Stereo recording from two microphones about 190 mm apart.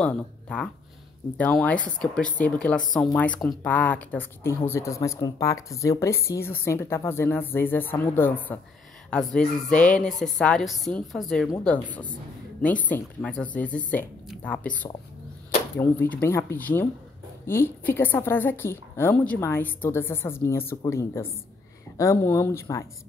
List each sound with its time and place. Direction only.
0.0 s a woman's voice: 5° left (ahead or behind)
15.8 s a woman's voice: 10° left (ahead or behind)